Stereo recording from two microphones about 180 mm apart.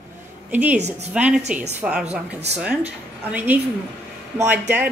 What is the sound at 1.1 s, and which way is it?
Speech, 5° right (ahead or behind).